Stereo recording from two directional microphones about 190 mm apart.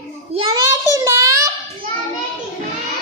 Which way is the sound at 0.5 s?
15° right (ahead or behind).